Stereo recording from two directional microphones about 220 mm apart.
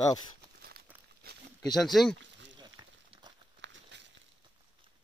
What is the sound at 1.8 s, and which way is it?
Speech, centre (ahead or behind).